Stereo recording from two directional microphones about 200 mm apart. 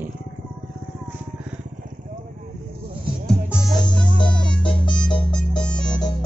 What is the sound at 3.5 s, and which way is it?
Music, 20° left (ahead or behind).